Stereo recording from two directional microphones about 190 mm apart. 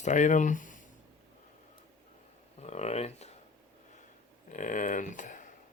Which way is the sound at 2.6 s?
35° left (ahead or behind).